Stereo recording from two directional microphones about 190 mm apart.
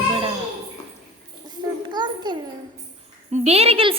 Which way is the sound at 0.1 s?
25° right (ahead or behind).